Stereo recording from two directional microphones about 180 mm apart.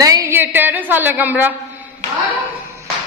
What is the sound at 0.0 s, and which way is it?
A woman's voice, 20° right (ahead or behind).